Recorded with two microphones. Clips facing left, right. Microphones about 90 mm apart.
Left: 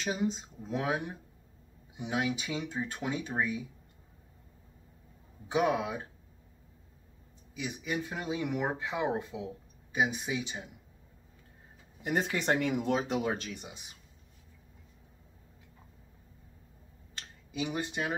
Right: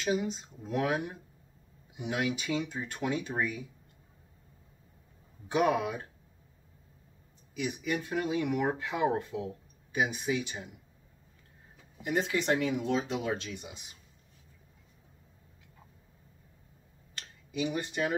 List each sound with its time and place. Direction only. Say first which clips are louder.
0.0 s speech: right 1 dB; 30° left (ahead or behind)
5.5 s speech: right 1 dB; 15° left (ahead or behind)
7.8 s speech: right 3 dB; 15° left (ahead or behind)
12.1 s speech: right 1 dB; 40° left (ahead or behind)
17.6 s speech: right 2 dB; 20° left (ahead or behind)